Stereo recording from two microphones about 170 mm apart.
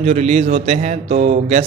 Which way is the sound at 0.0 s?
40° right (ahead or behind).